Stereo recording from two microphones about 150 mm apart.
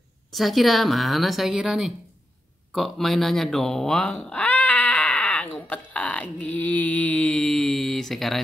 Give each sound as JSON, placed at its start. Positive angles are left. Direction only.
{"t": 0.3, "sound": "speech", "side_deg": 0}